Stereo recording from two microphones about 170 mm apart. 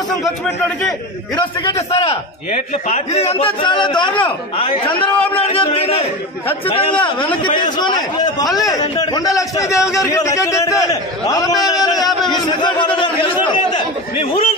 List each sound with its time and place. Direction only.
1.4 s a man's voice: 25° left (ahead or behind)
2.0 s a man's voice: 40° left (ahead or behind)